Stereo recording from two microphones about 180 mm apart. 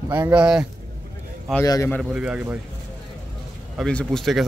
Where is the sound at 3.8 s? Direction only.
5° left (ahead or behind).